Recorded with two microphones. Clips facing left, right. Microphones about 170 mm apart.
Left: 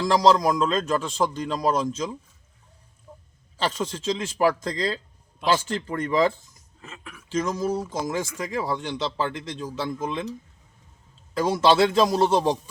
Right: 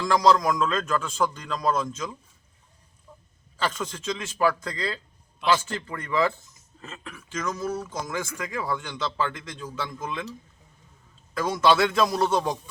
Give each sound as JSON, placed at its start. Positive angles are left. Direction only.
{"t": 0.1, "sound": "speech", "side_deg": 25}
{"t": 3.1, "sound": "a sound", "side_deg": 20}
{"t": 3.6, "sound": "speech", "side_deg": 30}
{"t": 6.8, "sound": "speech", "side_deg": 10}
{"t": 7.3, "sound": "speech", "side_deg": 30}
{"t": 11.3, "sound": "speech", "side_deg": 30}